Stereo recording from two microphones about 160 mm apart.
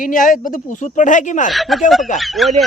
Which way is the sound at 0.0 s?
60° left (ahead or behind).